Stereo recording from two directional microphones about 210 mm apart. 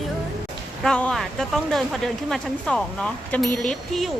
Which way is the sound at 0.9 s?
5° left (ahead or behind).